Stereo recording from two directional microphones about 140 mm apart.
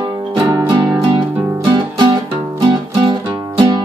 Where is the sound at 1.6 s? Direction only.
35° right (ahead or behind).